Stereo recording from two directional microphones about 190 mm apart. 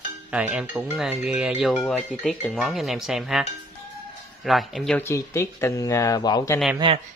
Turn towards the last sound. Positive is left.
turn(degrees=-25)  # may be behind; listen again after turning